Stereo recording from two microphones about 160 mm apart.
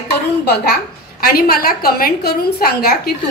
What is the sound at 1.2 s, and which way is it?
A woman's voice, 70° left (ahead or behind).